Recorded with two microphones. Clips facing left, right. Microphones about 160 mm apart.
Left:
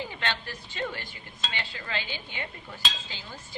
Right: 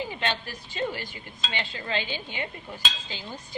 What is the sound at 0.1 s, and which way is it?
Speech, 15° right (ahead or behind).